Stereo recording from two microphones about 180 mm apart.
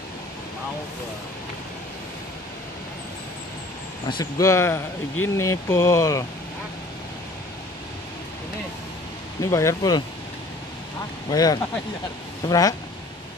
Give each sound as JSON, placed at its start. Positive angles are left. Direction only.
{"t": 4.1, "sound": "speech", "side_deg": 20}
{"t": 9.4, "sound": "speech", "side_deg": 15}
{"t": 11.2, "sound": "speech", "side_deg": 20}